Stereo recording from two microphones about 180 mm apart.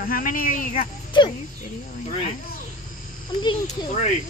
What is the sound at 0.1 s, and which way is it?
Speech, 50° left (ahead or behind).